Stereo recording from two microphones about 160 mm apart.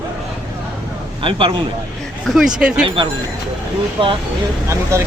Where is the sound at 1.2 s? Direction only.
30° right (ahead or behind).